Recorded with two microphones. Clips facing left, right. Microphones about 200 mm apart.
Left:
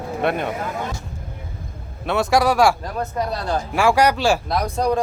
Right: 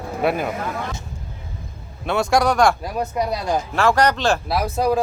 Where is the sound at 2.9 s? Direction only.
10° right (ahead or behind).